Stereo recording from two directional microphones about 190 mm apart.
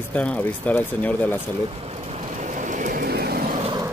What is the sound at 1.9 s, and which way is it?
Vehicle, 35° right (ahead or behind).